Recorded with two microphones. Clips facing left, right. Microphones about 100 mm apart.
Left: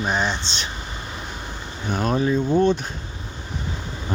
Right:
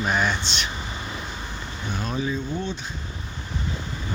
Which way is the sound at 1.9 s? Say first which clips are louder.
Left 7 dB; 50° left (ahead or behind).